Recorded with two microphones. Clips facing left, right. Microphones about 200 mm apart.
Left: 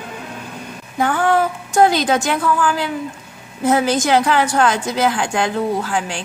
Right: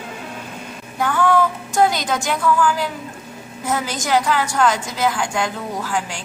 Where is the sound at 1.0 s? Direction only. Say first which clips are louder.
Left 1 dB; 55° left (ahead or behind).